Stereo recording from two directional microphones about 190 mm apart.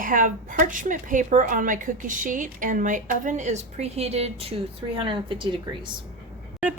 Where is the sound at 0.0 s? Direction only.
45° right (ahead or behind); by 5.5 s 25° right (ahead or behind).